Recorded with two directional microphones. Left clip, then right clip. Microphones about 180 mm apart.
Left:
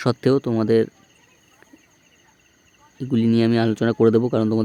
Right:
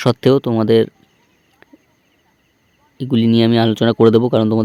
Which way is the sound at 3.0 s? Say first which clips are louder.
Right 5 dB; 30° right (ahead or behind).